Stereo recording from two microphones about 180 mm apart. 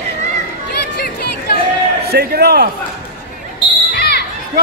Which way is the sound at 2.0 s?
60° right (ahead or behind).